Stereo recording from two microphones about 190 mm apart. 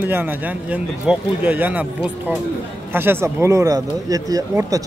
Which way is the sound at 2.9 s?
10° right (ahead or behind).